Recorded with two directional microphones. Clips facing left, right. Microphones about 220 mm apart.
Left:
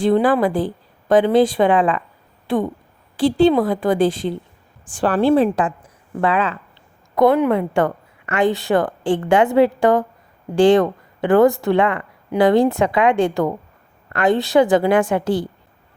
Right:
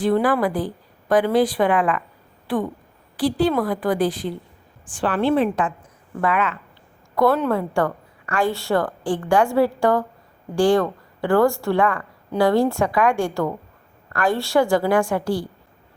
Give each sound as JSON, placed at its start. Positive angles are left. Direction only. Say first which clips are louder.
{"t": 0.0, "sound": "a woman's voice", "louder": "left 3 dB", "side_deg": 25}
{"t": 4.9, "sound": "a woman's voice", "louder": "left 4 dB", "side_deg": 40}
{"t": 7.2, "sound": "a woman's voice", "louder": "left 4 dB", "side_deg": 15}